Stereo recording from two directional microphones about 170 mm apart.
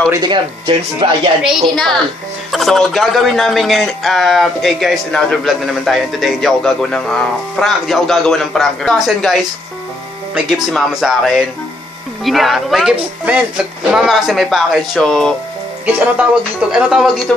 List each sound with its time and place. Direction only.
0.1 s speech: 25° right (ahead or behind)
1.4 s speech: centre (ahead or behind)
16.7 s speech: 5° right (ahead or behind)